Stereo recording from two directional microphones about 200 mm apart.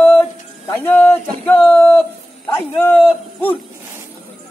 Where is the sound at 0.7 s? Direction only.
10° left (ahead or behind).